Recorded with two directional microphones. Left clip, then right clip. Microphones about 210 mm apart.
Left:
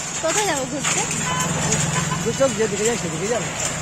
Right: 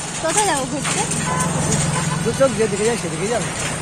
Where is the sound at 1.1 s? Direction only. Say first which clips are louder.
Right 1 dB; 30° left (ahead or behind).